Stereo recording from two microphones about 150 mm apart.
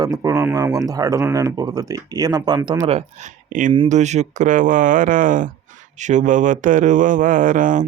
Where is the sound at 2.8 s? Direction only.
45° right (ahead or behind).